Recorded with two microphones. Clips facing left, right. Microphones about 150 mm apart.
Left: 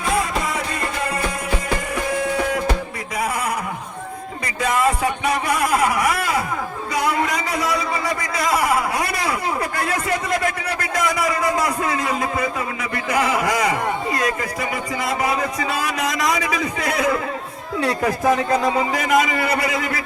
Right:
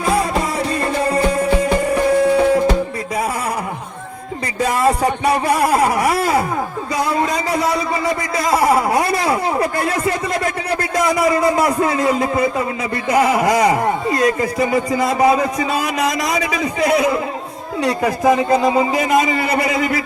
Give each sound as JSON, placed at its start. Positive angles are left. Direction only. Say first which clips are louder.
{"t": 0.1, "sound": "music", "louder": "right 3 dB", "side_deg": -30}
{"t": 4.6, "sound": "music", "louder": "right 3 dB", "side_deg": -35}
{"t": 7.2, "sound": "a sound", "louder": "right 4 dB", "side_deg": -30}
{"t": 13.1, "sound": "speech", "louder": "right 6 dB", "side_deg": -25}